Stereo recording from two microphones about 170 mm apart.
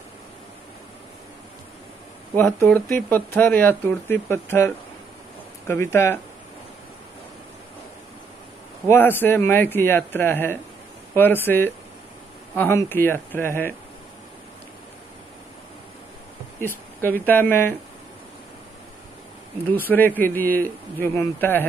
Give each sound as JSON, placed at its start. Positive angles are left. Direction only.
{"t": 2.3, "sound": "speech", "side_deg": 10}
{"t": 8.8, "sound": "speech", "side_deg": 10}
{"t": 16.6, "sound": "speech", "side_deg": 10}
{"t": 19.7, "sound": "speech", "side_deg": 10}